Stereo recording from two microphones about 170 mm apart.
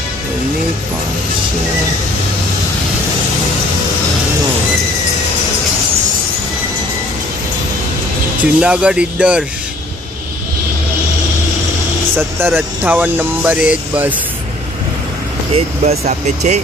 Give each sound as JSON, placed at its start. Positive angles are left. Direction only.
{"t": 8.5, "sound": "speech", "side_deg": -5}
{"t": 12.2, "sound": "speech", "side_deg": -10}
{"t": 15.5, "sound": "speech", "side_deg": -40}